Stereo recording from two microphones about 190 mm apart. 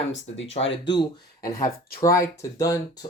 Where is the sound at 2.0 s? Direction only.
15° left (ahead or behind).